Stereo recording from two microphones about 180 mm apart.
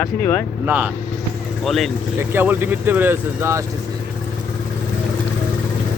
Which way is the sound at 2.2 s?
10° right (ahead or behind).